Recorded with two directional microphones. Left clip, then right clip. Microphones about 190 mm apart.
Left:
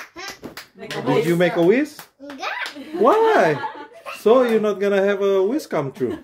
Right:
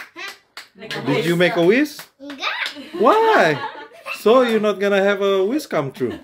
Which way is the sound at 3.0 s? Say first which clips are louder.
Right 1 dB; 25° right (ahead or behind).